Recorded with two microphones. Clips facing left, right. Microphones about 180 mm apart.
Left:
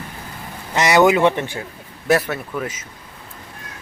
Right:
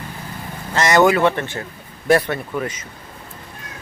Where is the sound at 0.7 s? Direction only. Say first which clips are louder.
Even; 15° left (ahead or behind).